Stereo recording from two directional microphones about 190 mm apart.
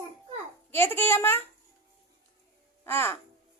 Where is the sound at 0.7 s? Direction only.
10° left (ahead or behind).